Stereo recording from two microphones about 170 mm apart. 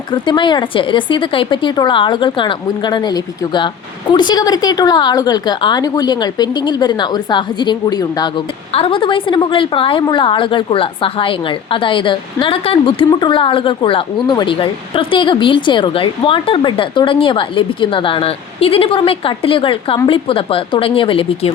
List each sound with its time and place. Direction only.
0.1 s a woman's voice: 30° left (ahead or behind)